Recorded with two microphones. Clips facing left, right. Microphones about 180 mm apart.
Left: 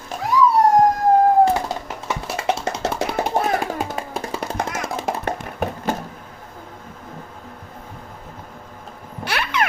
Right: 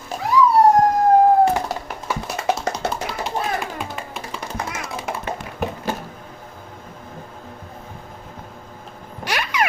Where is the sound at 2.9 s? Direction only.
60° left (ahead or behind).